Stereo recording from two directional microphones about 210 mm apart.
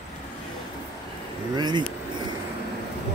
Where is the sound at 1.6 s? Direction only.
20° right (ahead or behind).